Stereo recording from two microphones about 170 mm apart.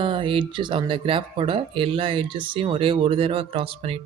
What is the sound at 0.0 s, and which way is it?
Speech, 30° right (ahead or behind).